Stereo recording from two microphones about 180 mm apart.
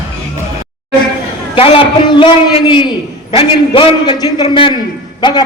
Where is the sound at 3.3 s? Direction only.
25° left (ahead or behind).